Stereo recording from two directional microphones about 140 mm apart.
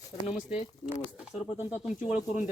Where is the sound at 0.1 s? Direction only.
55° left (ahead or behind).